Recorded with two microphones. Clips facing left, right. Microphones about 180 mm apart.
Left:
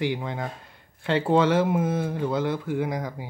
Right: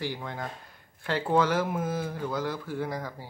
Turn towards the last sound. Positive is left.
turn(degrees=15)  # may be behind; listen again after turning